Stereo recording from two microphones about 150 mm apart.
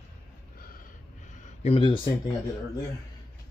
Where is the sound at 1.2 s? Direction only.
50° left (ahead or behind).